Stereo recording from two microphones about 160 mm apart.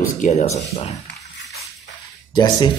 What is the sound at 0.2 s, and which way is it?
Speech, 50° left (ahead or behind).